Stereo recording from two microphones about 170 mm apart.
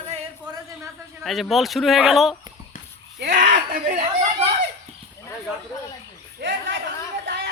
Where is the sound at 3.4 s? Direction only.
55° right (ahead or behind).